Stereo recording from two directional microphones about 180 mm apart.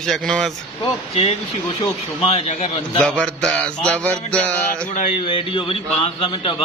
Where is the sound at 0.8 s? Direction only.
35° left (ahead or behind).